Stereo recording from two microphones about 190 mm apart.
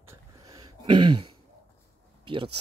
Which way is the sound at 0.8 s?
25° right (ahead or behind).